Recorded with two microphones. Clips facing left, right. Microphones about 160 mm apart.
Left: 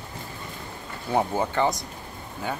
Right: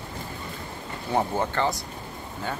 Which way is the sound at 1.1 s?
15° left (ahead or behind).